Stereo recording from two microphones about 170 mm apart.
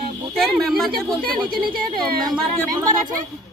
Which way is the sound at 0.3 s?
Centre (ahead or behind).